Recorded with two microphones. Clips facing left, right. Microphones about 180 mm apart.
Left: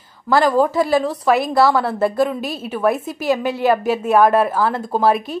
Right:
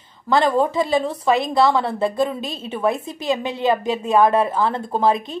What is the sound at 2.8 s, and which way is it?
Speech, 20° right (ahead or behind).